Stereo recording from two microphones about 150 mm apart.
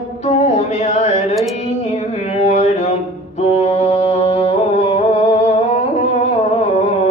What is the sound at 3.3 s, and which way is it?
Music, 45° left (ahead or behind).